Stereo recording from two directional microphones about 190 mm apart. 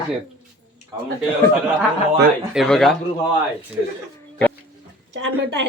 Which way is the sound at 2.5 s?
Centre (ahead or behind).